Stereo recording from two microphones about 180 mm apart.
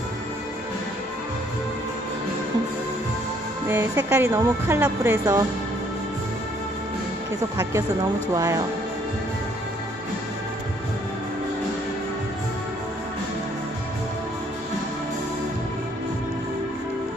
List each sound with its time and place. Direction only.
3.7 s speech: 10° right (ahead or behind)
7.5 s speech: 15° right (ahead or behind)